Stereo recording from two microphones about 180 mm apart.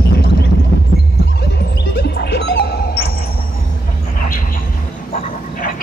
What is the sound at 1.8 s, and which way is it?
Music, 65° left (ahead or behind).